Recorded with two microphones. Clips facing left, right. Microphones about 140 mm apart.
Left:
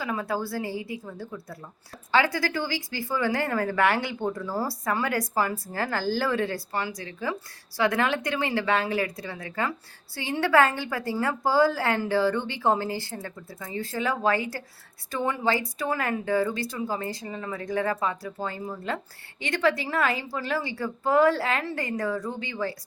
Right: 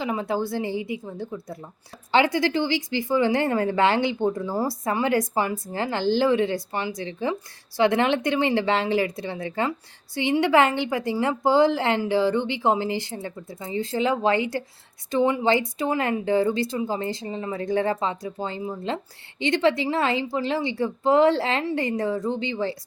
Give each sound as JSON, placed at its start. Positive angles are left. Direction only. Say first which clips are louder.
{"t": 0.0, "sound": "a woman's voice", "louder": "right 4 dB", "side_deg": -20}